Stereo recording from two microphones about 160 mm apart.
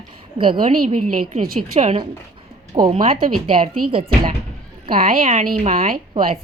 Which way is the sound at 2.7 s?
30° right (ahead or behind).